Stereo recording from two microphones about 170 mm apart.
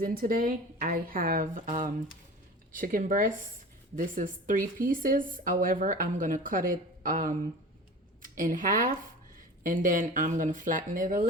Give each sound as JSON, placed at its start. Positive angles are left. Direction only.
{"t": 0.0, "sound": "a woman's voice", "side_deg": -55}